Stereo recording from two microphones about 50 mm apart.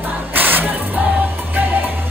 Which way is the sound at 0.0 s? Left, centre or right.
Right.